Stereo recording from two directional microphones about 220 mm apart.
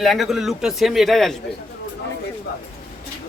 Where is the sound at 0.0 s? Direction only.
Centre (ahead or behind).